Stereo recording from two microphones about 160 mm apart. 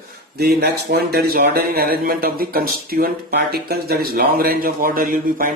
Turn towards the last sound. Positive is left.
turn(degrees=-60)  # may be behind; listen again after turning